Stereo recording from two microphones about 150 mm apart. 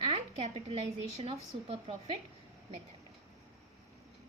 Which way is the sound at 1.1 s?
40° right (ahead or behind).